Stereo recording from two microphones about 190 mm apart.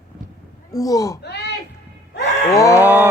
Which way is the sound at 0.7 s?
20° left (ahead or behind).